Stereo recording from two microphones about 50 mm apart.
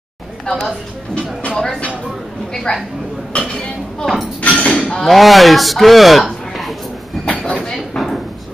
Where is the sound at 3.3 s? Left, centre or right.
Left.